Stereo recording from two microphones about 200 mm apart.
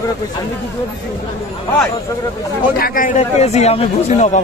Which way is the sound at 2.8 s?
45° left (ahead or behind).